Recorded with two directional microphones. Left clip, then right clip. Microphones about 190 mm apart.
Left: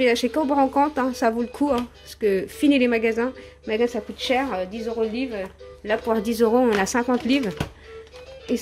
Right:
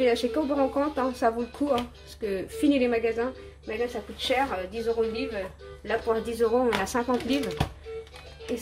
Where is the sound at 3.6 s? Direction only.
60° left (ahead or behind).